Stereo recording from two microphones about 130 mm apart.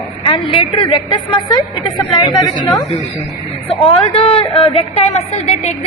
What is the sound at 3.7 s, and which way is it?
A woman's voice, 45° left (ahead or behind).